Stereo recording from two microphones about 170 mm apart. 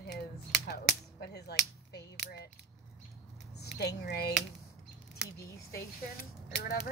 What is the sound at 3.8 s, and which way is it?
Speech, 70° left (ahead or behind).